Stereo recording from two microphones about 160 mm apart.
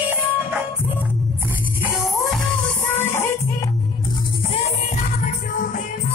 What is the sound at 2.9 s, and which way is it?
Music, 15° left (ahead or behind).